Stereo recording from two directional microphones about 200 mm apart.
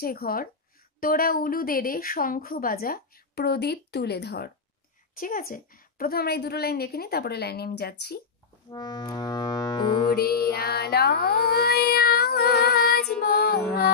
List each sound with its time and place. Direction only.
0.0 s a woman's voice: 50° left (ahead or behind)
5.2 s a woman's voice: 45° left (ahead or behind)
8.6 s music: 20° left (ahead or behind)
10.1 s child singing: 50° left (ahead or behind)
13.2 s music: 50° left (ahead or behind)